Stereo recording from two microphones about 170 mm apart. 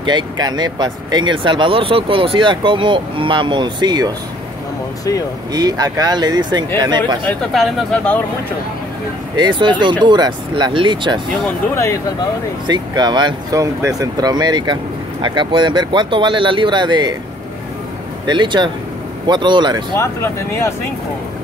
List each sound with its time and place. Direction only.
0.0 s speech: 25° right (ahead or behind)
5.5 s speech: 20° right (ahead or behind)
7.5 s speech: centre (ahead or behind)
9.4 s speech: 30° right (ahead or behind)
11.7 s speech: 15° left (ahead or behind)
12.6 s speech: 25° right (ahead or behind)
18.2 s speech: 25° right (ahead or behind)
20.0 s speech: 15° left (ahead or behind)